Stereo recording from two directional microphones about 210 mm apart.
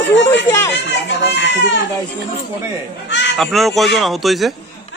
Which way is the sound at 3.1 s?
55° left (ahead or behind).